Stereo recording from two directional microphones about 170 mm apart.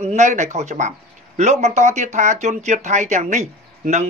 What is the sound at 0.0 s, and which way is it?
Speech, 45° right (ahead or behind).